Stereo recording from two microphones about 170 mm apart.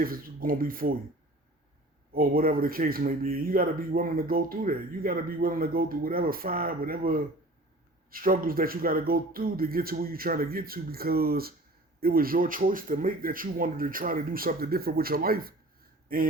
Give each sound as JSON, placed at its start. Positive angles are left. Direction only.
{"t": 0.0, "sound": "speech", "side_deg": -60}
{"t": 2.1, "sound": "speech", "side_deg": -60}